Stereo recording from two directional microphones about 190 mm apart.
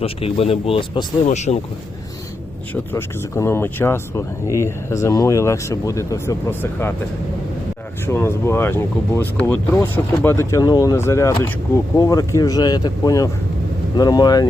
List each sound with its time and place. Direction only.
0.0 s speech: 30° left (ahead or behind)
2.9 s speech: 15° left (ahead or behind)
8.0 s speech: 15° left (ahead or behind)